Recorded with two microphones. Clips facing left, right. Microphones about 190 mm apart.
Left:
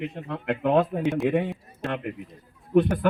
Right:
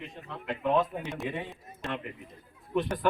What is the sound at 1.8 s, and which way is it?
Speech, 60° left (ahead or behind).